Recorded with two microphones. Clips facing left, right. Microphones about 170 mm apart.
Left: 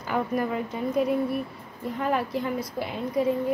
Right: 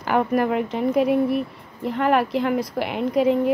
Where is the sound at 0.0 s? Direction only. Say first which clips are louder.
Right 6 dB; 75° right (ahead or behind).